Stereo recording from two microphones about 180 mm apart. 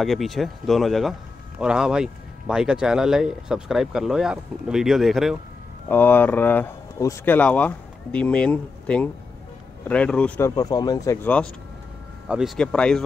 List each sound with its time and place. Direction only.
0.0 s speech: centre (ahead or behind)
5.9 s speech: 10° left (ahead or behind)
10.5 s speech: 20° left (ahead or behind)
12.3 s speech: centre (ahead or behind)